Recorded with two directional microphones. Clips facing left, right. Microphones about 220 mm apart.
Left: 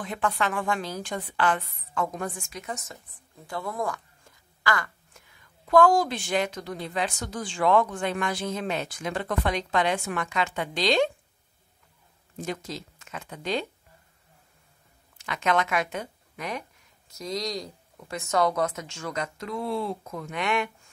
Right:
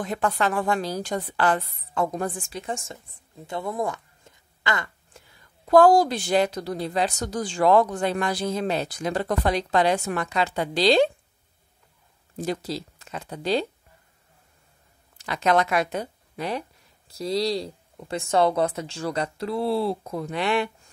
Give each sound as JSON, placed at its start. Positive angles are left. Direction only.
{"t": 0.0, "sound": "speech", "side_deg": -40}
{"t": 12.4, "sound": "speech", "side_deg": -35}
{"t": 15.1, "sound": "speech", "side_deg": -35}